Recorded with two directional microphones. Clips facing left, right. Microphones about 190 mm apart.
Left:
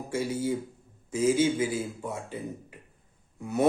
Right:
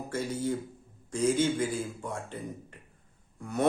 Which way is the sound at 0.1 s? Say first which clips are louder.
Left 3 dB; 10° left (ahead or behind).